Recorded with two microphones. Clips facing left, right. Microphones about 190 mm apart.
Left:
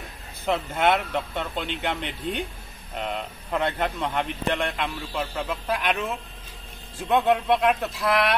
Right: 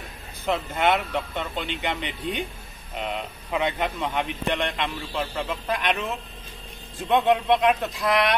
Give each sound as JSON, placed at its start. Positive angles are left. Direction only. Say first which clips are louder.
{"t": 0.5, "sound": "speech", "louder": "even", "side_deg": 0}
{"t": 3.0, "sound": "speech", "louder": "even", "side_deg": -5}